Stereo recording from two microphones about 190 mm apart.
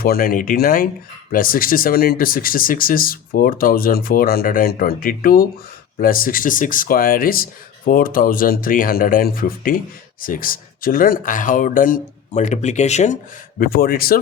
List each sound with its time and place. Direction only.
0.0 s speech: 50° left (ahead or behind)
13.6 s speech: 50° left (ahead or behind)